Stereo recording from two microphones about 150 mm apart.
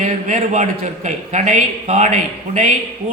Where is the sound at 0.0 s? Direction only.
55° right (ahead or behind).